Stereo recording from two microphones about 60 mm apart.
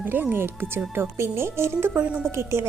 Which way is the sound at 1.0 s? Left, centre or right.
Right.